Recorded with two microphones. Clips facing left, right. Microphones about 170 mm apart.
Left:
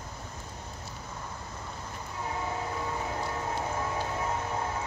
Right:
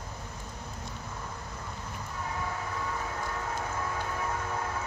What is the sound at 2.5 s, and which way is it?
Train, 25° left (ahead or behind).